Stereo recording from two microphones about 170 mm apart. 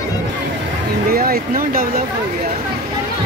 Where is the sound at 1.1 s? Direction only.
60° right (ahead or behind).